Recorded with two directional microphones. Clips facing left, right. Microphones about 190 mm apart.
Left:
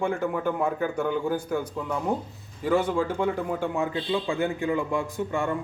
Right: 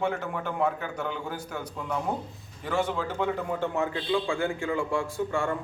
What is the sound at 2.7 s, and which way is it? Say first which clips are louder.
A man's voice: left 5 dB; 10° left (ahead or behind).